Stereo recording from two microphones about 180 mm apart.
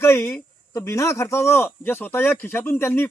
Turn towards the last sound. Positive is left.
turn(degrees=10)  # may be behind; listen again after turning